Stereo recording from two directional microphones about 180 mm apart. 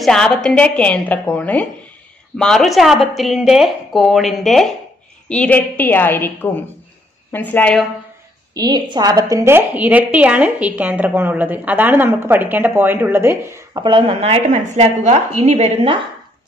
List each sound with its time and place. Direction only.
0.0 s a woman's voice: 5° left (ahead or behind)
8.5 s a woman's voice: 25° right (ahead or behind)
13.8 s speech: 30° right (ahead or behind)